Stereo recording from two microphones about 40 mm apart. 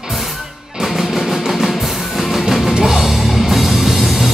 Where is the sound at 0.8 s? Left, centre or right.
Centre.